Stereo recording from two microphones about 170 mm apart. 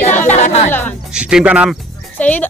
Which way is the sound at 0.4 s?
45° left (ahead or behind).